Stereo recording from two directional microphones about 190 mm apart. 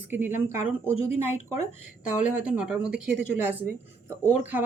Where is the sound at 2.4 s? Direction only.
5° right (ahead or behind).